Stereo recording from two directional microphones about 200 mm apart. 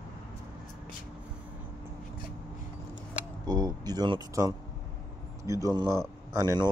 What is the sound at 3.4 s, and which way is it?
Speech, 20° right (ahead or behind).